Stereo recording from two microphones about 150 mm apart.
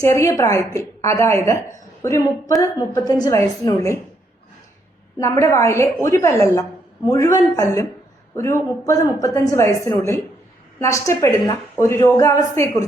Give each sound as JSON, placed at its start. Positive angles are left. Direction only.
{"t": 0.0, "sound": "a woman's voice", "side_deg": 20}
{"t": 5.2, "sound": "a woman's voice", "side_deg": 20}